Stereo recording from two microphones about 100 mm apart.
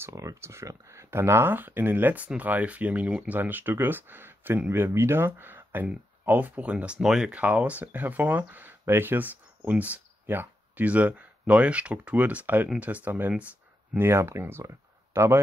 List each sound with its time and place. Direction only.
0.0 s speech: 30° right (ahead or behind)